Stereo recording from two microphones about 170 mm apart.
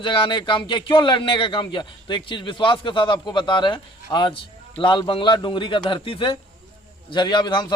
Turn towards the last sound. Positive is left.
turn(degrees=25)  # may be behind; listen again after turning